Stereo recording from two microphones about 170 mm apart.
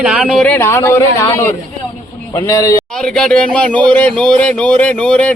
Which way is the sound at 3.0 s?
5° left (ahead or behind).